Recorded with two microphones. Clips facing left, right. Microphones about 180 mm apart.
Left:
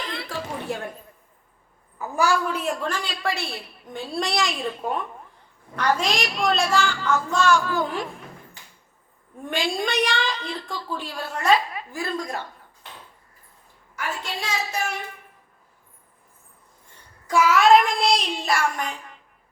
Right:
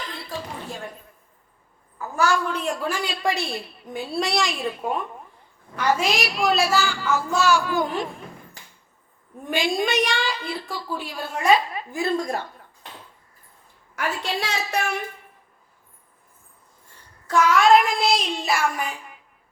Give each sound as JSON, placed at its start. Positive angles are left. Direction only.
{"t": 0.1, "sound": "music", "side_deg": 75}
{"t": 2.0, "sound": "a woman's voice", "side_deg": 15}
{"t": 3.9, "sound": "child singing", "side_deg": 0}
{"t": 5.7, "sound": "a woman's voice", "side_deg": -5}
{"t": 9.5, "sound": "a woman's voice", "side_deg": -15}
{"t": 14.0, "sound": "a woman's voice", "side_deg": -65}
{"t": 17.2, "sound": "child singing", "side_deg": 5}